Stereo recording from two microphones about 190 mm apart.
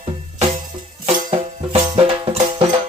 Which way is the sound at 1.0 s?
35° right (ahead or behind).